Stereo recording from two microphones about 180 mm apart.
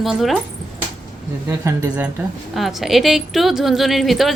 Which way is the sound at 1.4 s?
15° right (ahead or behind).